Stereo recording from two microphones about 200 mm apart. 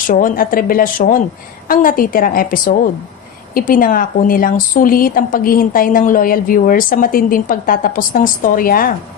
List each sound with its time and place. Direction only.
0.1 s a woman's voice: 40° left (ahead or behind)